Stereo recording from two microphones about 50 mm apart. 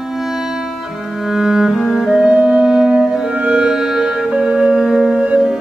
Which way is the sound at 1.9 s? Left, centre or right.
Centre.